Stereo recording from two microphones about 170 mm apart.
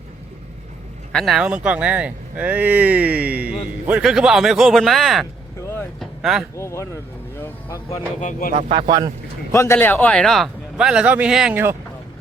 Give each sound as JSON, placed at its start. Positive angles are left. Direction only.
{"t": 1.1, "sound": "speech", "side_deg": 0}
{"t": 6.0, "sound": "vehicle", "side_deg": 0}
{"t": 6.6, "sound": "speech", "side_deg": 15}
{"t": 8.2, "sound": "speech", "side_deg": 50}
{"t": 8.7, "sound": "speech", "side_deg": -25}
{"t": 9.5, "sound": "a man's voice", "side_deg": 15}